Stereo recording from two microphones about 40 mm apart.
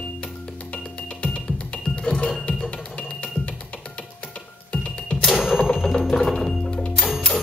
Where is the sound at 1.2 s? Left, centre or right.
Left.